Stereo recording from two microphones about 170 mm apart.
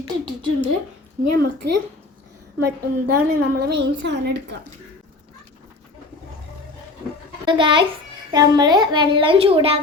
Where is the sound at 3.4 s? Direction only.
80° right.